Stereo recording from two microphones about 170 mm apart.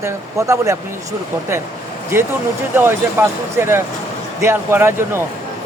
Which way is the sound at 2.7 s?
15° right (ahead or behind).